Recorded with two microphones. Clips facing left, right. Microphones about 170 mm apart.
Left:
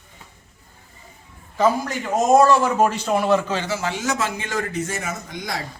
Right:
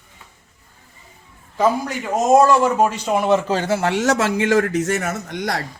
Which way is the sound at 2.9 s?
15° right (ahead or behind).